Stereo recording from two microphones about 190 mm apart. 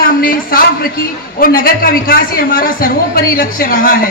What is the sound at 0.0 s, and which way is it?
A man's voice, 50° left (ahead or behind).